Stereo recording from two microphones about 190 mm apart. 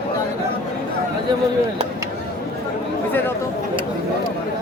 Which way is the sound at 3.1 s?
10° left (ahead or behind).